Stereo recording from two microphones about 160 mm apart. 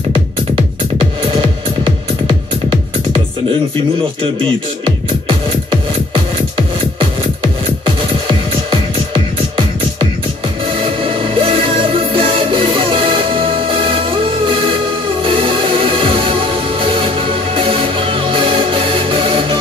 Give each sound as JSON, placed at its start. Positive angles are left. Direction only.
{"t": 4.2, "sound": "music", "side_deg": -35}
{"t": 8.3, "sound": "music", "side_deg": -30}